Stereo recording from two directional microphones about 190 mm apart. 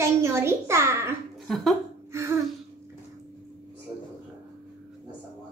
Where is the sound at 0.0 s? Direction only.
15° right (ahead or behind).